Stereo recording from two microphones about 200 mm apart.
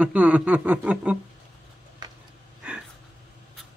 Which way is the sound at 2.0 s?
20° right (ahead or behind).